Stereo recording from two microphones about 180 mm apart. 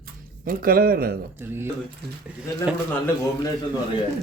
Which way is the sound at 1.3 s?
10° right (ahead or behind).